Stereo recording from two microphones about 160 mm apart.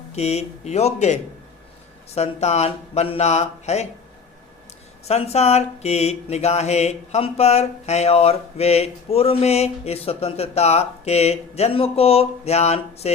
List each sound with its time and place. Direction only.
0.1 s speech: 40° left (ahead or behind)
5.0 s speech: 40° left (ahead or behind)